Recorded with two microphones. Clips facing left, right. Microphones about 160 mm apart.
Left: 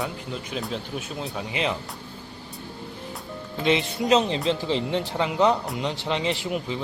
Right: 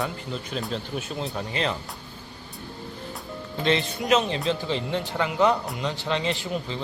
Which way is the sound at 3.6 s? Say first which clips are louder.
Left 2 dB; 20° left (ahead or behind).